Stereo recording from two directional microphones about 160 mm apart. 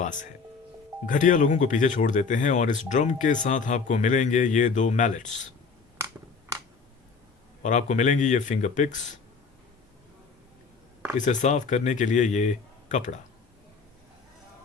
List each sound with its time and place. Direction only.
0.0 s a man's voice: 50° left (ahead or behind)
7.6 s a man's voice: 50° left (ahead or behind)
11.3 s a man's voice: 50° left (ahead or behind)